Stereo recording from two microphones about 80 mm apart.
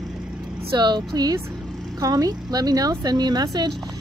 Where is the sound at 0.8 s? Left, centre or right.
Right.